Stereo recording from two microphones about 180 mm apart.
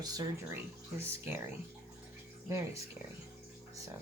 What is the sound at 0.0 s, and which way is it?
Speech, 20° right (ahead or behind).